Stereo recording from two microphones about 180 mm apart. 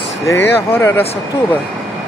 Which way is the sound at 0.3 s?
10° left (ahead or behind).